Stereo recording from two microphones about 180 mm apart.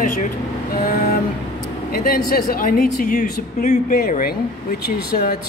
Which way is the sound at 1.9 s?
55° left (ahead or behind).